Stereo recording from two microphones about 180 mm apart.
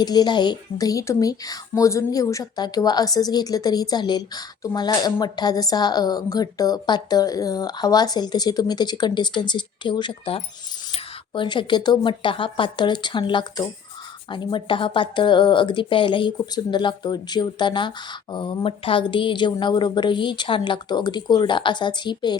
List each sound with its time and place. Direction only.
0.0 s speech: 20° left (ahead or behind)